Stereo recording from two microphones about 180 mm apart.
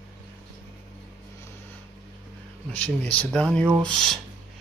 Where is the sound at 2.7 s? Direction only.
5° left (ahead or behind).